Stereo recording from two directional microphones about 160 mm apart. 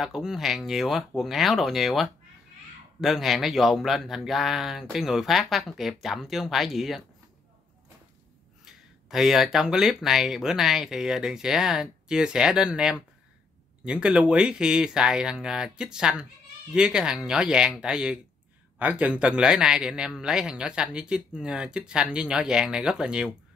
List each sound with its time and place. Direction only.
0.0 s a man's voice: centre (ahead or behind)
8.6 s a man's voice: centre (ahead or behind)